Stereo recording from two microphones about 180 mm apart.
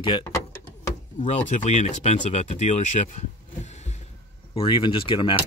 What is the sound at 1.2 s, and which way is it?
Speech, 40° left (ahead or behind).